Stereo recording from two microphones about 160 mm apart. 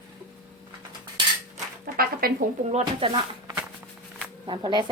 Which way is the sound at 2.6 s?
45° right (ahead or behind).